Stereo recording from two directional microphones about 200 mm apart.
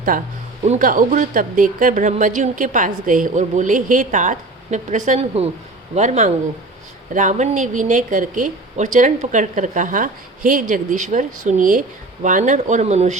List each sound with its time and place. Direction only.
0.1 s a woman's voice: 40° right (ahead or behind)